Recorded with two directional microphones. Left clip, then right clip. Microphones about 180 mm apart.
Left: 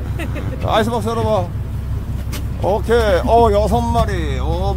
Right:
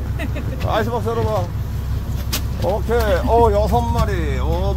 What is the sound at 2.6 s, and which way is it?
Speech, 45° left (ahead or behind).